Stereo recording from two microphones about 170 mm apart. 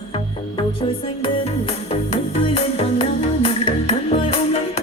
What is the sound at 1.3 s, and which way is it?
Music, 35° left (ahead or behind).